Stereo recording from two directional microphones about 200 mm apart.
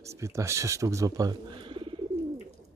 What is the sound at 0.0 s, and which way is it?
Speech, 15° right (ahead or behind).